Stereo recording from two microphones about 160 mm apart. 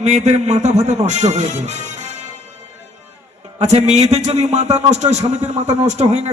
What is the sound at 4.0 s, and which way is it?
A man's voice, 45° right (ahead or behind).